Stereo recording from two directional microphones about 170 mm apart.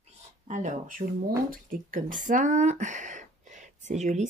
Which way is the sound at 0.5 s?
45° right (ahead or behind).